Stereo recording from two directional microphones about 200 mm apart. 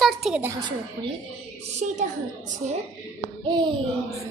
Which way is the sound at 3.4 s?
20° right (ahead or behind).